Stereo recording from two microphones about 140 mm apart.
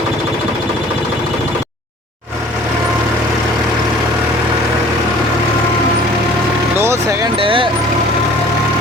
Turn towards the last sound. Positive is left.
turn(degrees=-40)  # may be behind; listen again after turning